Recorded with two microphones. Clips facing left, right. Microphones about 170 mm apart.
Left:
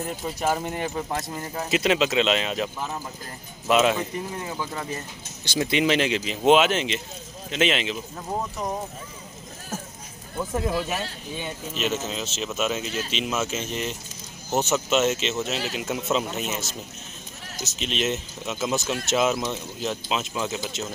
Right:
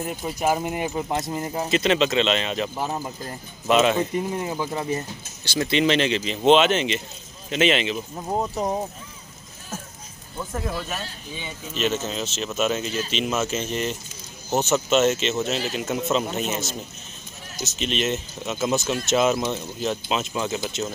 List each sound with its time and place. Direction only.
0.2 s speech: 15° right (ahead or behind)
1.7 s speech: 5° left (ahead or behind)
2.8 s speech: 30° right (ahead or behind)
3.6 s speech: 5° left (ahead or behind)
4.3 s speech: 25° right (ahead or behind)
5.4 s speech: 15° left (ahead or behind); by 8.0 s centre (ahead or behind)
8.3 s speech: 30° right (ahead or behind)
10.5 s speech: 10° left (ahead or behind)
17.7 s speech: centre (ahead or behind)